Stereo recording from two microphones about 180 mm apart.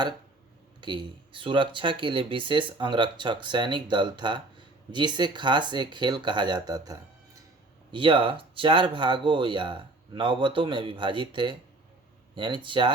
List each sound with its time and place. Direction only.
0.8 s speech: 25° right (ahead or behind)